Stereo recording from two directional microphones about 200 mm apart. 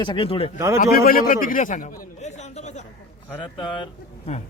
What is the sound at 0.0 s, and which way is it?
Speech, 25° left (ahead or behind).